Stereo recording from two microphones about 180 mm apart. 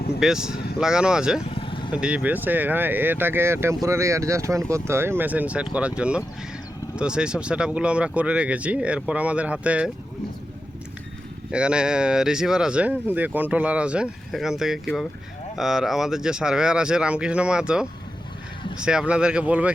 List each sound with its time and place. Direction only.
0.2 s speech: 5° right (ahead or behind)
1.5 s vehicle: 30° left (ahead or behind)
2.0 s speech: 5° right (ahead or behind)
11.5 s speech: 5° right (ahead or behind)